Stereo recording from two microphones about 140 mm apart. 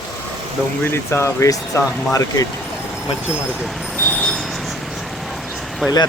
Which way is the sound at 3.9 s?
5° left (ahead or behind).